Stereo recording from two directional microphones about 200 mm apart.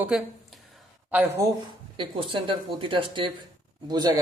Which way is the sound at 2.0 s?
25° right (ahead or behind).